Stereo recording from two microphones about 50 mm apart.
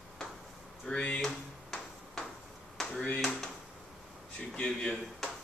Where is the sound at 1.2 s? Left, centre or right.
Centre.